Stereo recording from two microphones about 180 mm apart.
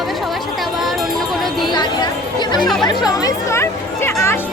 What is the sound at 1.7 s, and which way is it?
Speech, 25° left (ahead or behind).